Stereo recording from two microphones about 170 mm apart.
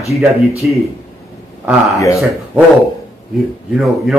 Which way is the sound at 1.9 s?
15° left (ahead or behind).